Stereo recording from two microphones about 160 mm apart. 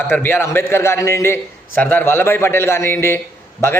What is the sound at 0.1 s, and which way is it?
A man's voice, 15° left (ahead or behind).